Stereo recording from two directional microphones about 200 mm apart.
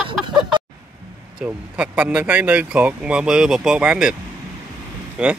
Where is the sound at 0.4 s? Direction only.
25° right (ahead or behind).